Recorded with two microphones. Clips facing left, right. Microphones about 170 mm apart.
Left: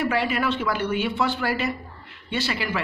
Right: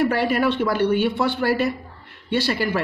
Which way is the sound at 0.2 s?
55° right (ahead or behind).